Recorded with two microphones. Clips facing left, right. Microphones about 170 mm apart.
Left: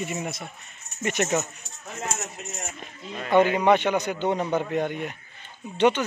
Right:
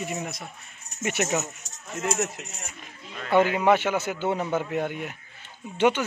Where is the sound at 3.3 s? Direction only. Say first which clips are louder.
Left 1 dB; 5° right (ahead or behind).